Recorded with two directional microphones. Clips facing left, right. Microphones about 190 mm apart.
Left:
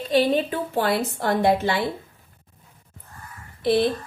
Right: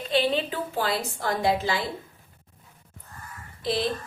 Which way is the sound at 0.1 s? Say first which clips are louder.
Left 5 dB; 45° left (ahead or behind).